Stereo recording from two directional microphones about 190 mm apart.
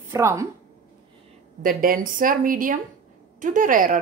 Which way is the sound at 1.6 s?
50° right (ahead or behind).